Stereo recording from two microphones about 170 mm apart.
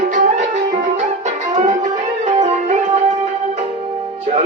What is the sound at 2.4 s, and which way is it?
Music, 45° right (ahead or behind).